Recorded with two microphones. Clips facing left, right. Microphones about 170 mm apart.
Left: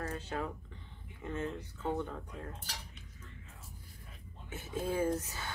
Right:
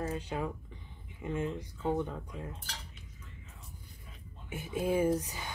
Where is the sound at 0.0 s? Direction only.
15° right (ahead or behind).